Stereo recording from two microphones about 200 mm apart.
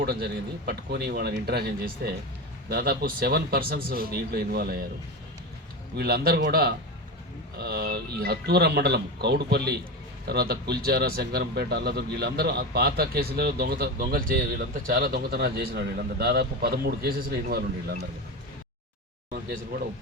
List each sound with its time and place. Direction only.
0.0 s a man's voice: 50° right (ahead or behind)
6.0 s a man's voice: 50° right (ahead or behind)
19.3 s speech: 50° right (ahead or behind)